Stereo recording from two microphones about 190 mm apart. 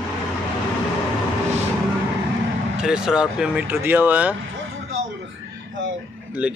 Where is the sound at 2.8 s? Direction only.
5° right (ahead or behind).